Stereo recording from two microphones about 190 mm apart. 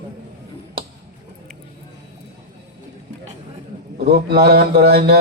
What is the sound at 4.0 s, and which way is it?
A man's voice, 55° right (ahead or behind).